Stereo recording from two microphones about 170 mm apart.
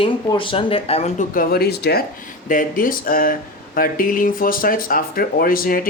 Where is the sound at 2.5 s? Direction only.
50° left (ahead or behind).